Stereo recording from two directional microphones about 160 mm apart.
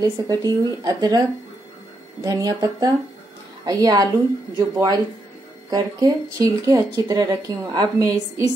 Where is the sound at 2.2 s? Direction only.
20° right (ahead or behind).